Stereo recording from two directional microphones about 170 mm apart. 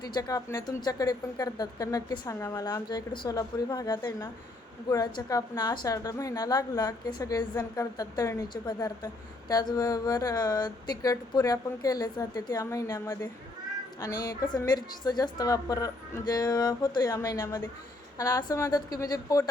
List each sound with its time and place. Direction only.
0.0 s speech: 25° left (ahead or behind)